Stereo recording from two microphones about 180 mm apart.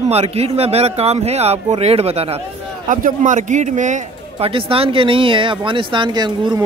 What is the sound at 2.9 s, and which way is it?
A man's voice, 45° right (ahead or behind).